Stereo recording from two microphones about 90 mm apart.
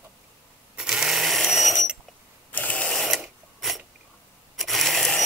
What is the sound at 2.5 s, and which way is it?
Ratchet, 15° left (ahead or behind).